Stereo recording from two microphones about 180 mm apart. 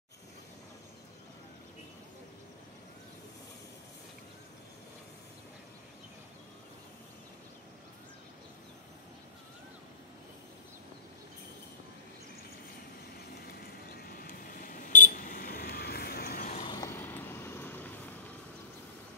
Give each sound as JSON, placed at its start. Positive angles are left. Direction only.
{"t": 13.5, "sound": "buzzer", "side_deg": 55}
{"t": 16.6, "sound": "vehicle", "side_deg": 20}